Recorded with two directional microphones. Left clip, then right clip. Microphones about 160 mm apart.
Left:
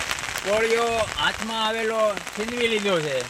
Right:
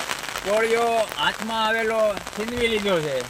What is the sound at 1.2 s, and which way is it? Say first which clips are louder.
Speech: right 1 dB; 15° left (ahead or behind).